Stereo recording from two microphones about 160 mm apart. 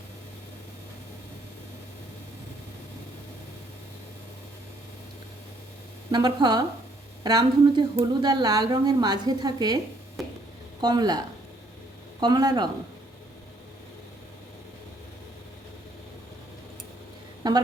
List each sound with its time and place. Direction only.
6.1 s a woman's voice: 25° right (ahead or behind)
10.2 s a sound: centre (ahead or behind)
10.8 s a woman's voice: 25° right (ahead or behind)
17.4 s a woman's voice: 25° right (ahead or behind)